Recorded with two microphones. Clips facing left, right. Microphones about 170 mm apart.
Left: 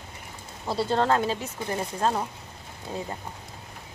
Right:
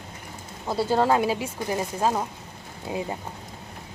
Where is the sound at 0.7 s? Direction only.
5° right (ahead or behind).